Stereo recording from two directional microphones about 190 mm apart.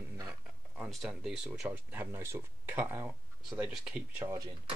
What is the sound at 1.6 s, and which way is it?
Speech, 10° right (ahead or behind).